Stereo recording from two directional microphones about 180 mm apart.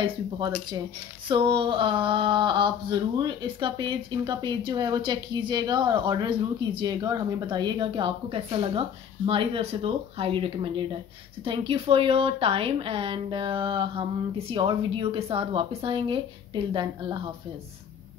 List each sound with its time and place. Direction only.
1.3 s speech: 30° right (ahead or behind)